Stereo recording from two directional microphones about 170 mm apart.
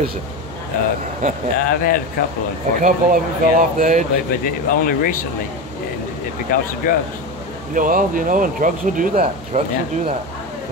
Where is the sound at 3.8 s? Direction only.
45° right (ahead or behind).